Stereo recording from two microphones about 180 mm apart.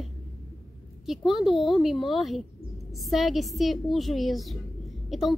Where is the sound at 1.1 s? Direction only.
Centre (ahead or behind).